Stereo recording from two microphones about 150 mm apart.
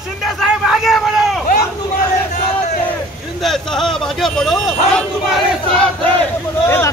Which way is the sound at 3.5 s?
Centre (ahead or behind).